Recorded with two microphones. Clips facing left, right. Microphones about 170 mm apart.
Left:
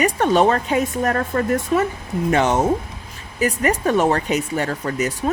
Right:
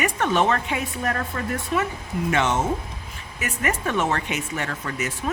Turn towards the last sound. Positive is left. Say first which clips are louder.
# left 6 dB
turn(degrees=35)  # may be behind; listen again after turning